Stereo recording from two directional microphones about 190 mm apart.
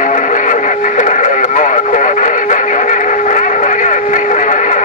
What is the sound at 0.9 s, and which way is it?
Radio, 40° left (ahead or behind).